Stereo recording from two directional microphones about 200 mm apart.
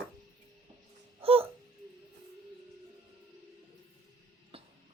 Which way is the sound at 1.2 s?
30° right (ahead or behind).